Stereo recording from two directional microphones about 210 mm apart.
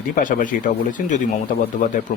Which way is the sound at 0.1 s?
40° left (ahead or behind).